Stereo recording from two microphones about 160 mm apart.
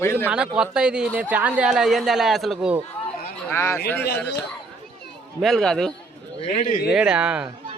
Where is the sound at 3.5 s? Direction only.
15° left (ahead or behind).